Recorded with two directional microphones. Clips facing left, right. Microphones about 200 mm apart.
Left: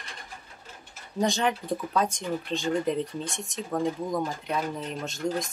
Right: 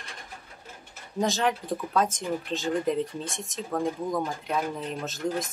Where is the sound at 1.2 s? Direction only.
Centre (ahead or behind).